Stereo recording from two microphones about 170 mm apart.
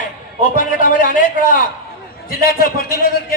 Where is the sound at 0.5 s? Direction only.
50° left (ahead or behind).